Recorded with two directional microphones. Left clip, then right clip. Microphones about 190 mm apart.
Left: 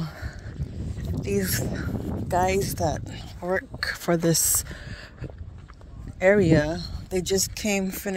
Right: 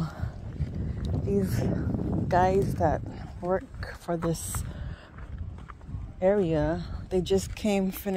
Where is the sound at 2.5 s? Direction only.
30° left (ahead or behind).